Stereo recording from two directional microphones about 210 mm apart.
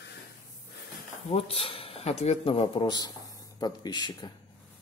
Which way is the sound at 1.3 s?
30° left (ahead or behind).